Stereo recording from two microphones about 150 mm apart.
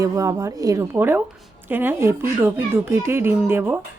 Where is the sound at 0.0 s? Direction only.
20° right (ahead or behind).